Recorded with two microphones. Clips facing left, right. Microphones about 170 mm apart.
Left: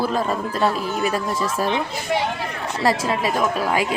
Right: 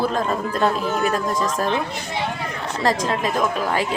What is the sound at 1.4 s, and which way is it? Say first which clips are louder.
Speech: even; 10° left (ahead or behind).